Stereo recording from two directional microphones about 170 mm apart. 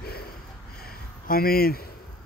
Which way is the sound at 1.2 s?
60° left (ahead or behind).